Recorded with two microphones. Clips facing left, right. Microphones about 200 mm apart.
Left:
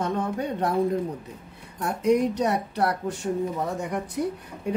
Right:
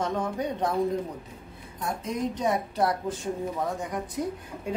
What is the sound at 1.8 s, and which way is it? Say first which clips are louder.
A woman's voice: left 8 dB; 70° left (ahead or behind).